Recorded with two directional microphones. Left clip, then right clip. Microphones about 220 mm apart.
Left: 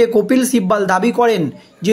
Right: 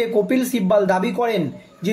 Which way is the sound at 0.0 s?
45° left (ahead or behind).